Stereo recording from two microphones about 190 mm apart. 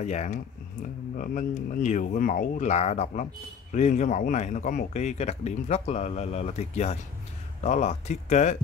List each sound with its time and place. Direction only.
0.0 s speech: 40° left (ahead or behind)